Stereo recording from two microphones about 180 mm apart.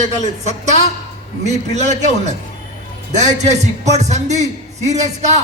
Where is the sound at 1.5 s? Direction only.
40° right (ahead or behind).